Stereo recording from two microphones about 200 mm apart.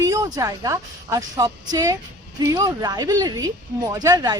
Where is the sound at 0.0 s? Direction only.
15° right (ahead or behind).